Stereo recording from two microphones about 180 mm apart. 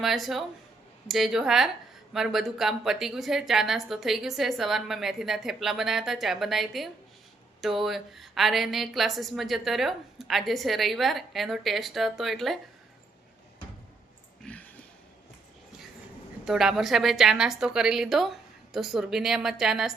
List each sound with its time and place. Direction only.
0.0 s a woman's voice: centre (ahead or behind)
14.4 s a sound: 10° left (ahead or behind)
16.5 s a woman's voice: centre (ahead or behind)